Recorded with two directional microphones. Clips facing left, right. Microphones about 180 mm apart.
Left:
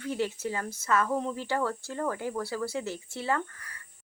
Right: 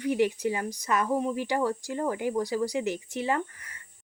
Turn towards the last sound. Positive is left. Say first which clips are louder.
# right 3 dB
turn(degrees=-15)  # may be behind; listen again after turning